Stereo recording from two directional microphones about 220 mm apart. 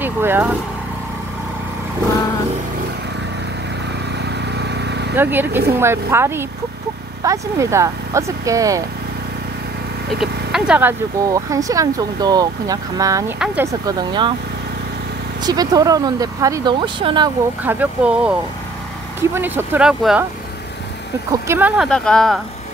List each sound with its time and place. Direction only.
0.0 s speech: 10° right (ahead or behind)
4.6 s vehicle: 50° right (ahead or behind)
5.1 s speech: 10° right (ahead or behind)
10.5 s speech: 5° right (ahead or behind)
15.4 s speech: 15° right (ahead or behind)
17.6 s speech: 5° right (ahead or behind)
19.3 s speech: 10° right (ahead or behind)
21.3 s speech: 10° right (ahead or behind)